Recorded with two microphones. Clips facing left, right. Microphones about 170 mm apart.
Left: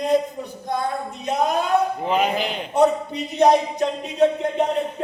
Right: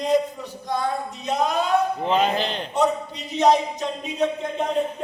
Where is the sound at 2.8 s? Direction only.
60° left (ahead or behind).